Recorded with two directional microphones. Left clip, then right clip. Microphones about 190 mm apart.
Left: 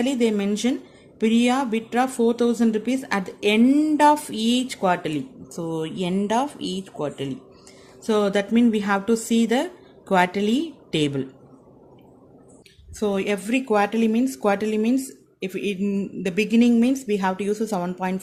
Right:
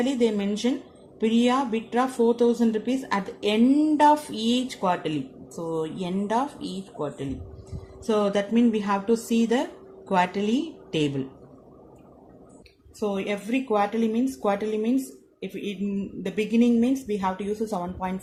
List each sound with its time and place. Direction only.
0.0 s a woman's voice: 45° left (ahead or behind)
13.0 s speech: 55° left (ahead or behind)